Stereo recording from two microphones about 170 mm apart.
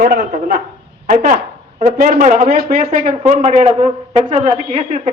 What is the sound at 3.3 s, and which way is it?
Speech, 45° right (ahead or behind).